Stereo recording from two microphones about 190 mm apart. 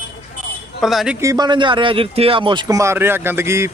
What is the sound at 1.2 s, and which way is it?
Speech, 20° right (ahead or behind).